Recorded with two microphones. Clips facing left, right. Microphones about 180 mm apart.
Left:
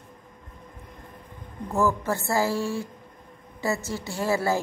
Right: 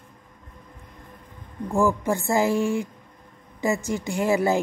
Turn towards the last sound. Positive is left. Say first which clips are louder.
# right 3 dB
turn(degrees=-20)  # may be behind; listen again after turning